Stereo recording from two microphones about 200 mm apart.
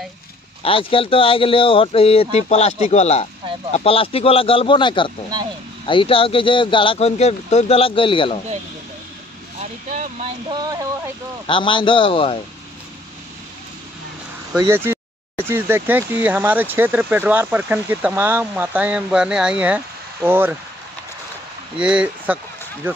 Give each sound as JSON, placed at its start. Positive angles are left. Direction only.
{"t": 0.6, "sound": "speech", "side_deg": 25}
{"t": 9.6, "sound": "vehicle", "side_deg": -40}
{"t": 10.5, "sound": "a sound", "side_deg": -20}
{"t": 11.4, "sound": "speech", "side_deg": 25}
{"t": 14.6, "sound": "speech", "side_deg": -10}
{"t": 21.7, "sound": "speech", "side_deg": -5}